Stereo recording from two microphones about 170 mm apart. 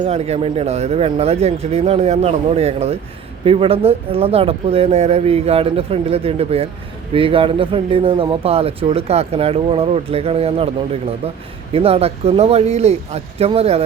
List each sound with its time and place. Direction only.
0.0 s speech: 40° right (ahead or behind)
11.7 s speech: 35° right (ahead or behind)